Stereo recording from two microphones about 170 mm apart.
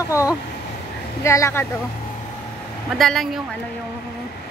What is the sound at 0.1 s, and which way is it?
Speech, 20° left (ahead or behind).